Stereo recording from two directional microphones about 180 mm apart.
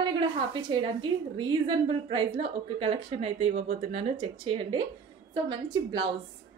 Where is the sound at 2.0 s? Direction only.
30° right (ahead or behind).